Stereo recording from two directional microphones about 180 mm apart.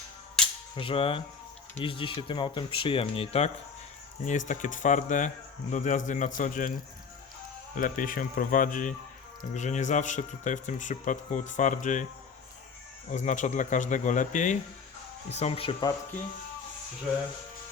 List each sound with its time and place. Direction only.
0.8 s speech: 30° left (ahead or behind)
4.3 s speech: 45° left (ahead or behind)
7.8 s speech: 50° left (ahead or behind)
13.1 s speech: 45° left (ahead or behind)